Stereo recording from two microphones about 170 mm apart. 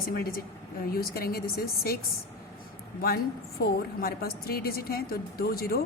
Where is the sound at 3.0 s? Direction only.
60° left (ahead or behind).